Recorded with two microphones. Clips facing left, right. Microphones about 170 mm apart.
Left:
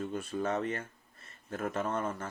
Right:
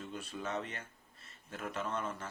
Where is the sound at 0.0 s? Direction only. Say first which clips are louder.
Left 8 dB; 50° left (ahead or behind).